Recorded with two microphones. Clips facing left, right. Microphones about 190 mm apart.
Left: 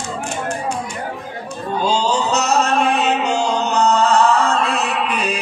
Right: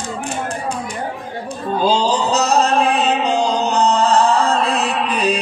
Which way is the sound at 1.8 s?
35° right (ahead or behind).